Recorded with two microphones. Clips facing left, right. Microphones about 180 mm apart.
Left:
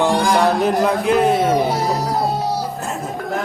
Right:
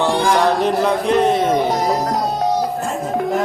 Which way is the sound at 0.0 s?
10° left (ahead or behind).